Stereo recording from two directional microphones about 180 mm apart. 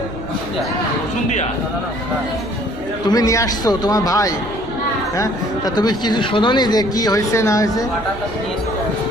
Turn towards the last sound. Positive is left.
turn(degrees=20)  # may be behind; listen again after turning